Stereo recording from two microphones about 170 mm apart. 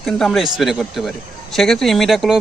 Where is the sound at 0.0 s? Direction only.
Centre (ahead or behind).